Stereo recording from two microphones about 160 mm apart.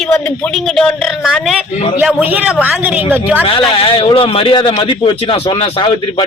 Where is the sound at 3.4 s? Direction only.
35° left (ahead or behind).